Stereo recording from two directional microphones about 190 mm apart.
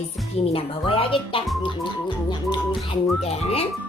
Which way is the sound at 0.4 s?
30° left (ahead or behind).